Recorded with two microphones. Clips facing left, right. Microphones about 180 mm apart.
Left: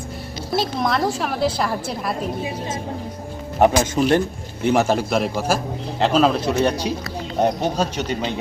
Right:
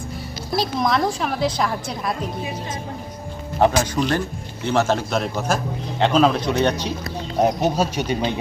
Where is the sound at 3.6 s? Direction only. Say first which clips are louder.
Left 2 dB; 25° left (ahead or behind).